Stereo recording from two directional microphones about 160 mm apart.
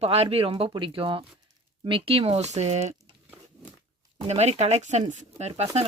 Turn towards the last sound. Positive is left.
turn(degrees=-40)  # may be behind; listen again after turning